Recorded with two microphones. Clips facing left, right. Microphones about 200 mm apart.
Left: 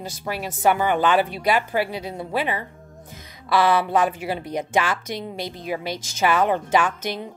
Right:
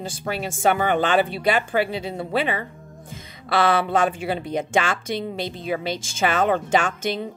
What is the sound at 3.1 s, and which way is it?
Speech, 25° right (ahead or behind).